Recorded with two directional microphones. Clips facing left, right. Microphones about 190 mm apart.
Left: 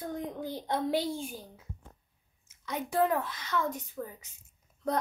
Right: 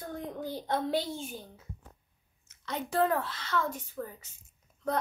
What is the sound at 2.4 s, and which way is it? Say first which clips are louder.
Speech: even; 10° left (ahead or behind).